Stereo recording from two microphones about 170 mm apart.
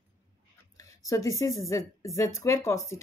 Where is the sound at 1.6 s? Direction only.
20° left (ahead or behind).